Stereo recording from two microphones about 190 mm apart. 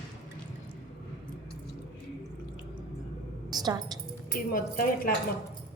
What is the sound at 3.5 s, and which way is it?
Keys jangling, 20° right (ahead or behind).